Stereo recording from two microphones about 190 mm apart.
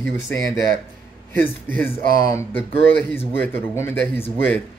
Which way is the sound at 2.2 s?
15° left (ahead or behind).